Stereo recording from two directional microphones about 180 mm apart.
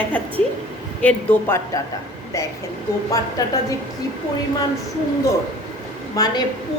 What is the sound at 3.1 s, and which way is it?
Speech, 20° left (ahead or behind).